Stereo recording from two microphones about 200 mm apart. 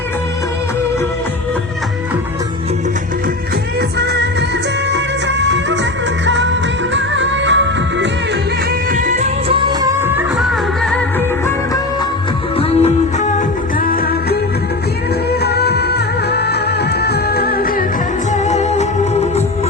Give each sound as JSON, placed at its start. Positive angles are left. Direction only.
{"t": 3.8, "sound": "music", "side_deg": -55}
{"t": 4.9, "sound": "music of bollywood", "side_deg": -60}
{"t": 6.2, "sound": "music", "side_deg": -65}
{"t": 8.9, "sound": "music", "side_deg": -40}
{"t": 9.5, "sound": "music of bollywood", "side_deg": -25}
{"t": 12.5, "sound": "music", "side_deg": 30}
{"t": 13.7, "sound": "music", "side_deg": 45}
{"t": 18.4, "sound": "music", "side_deg": 35}